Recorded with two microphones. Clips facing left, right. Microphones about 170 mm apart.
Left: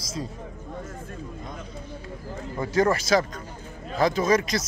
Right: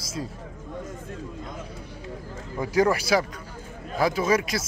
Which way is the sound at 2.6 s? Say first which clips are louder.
Right 1 dB; 10° right (ahead or behind).